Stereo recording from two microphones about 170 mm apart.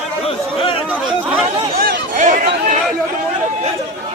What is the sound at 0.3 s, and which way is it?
Chatter, 30° left (ahead or behind).